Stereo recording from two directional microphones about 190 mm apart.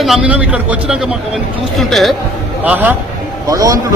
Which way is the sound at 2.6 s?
10° right (ahead or behind).